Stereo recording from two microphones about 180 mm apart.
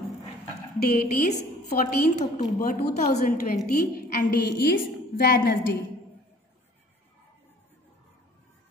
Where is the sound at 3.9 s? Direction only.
60° left (ahead or behind).